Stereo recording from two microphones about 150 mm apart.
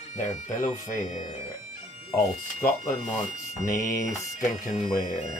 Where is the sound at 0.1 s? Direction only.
55° left (ahead or behind).